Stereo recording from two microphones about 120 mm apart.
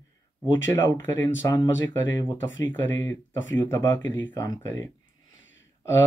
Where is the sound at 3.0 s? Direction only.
25° left (ahead or behind).